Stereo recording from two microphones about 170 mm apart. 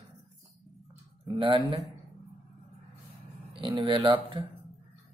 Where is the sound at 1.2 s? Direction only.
30° right (ahead or behind).